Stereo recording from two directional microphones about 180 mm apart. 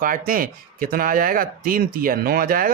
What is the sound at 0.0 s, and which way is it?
Speech, 50° right (ahead or behind).